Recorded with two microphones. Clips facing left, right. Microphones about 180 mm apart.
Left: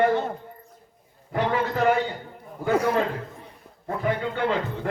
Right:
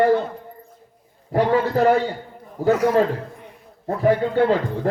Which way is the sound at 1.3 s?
35° right (ahead or behind).